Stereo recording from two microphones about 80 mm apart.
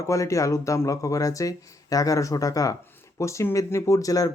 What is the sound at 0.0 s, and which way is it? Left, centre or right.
Speech, left.